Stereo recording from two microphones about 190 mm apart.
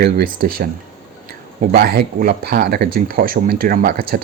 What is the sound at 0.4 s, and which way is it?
Speech, 50° right (ahead or behind).